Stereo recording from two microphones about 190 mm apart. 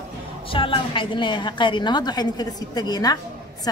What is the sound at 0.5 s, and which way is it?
A woman's voice, 25° left (ahead or behind).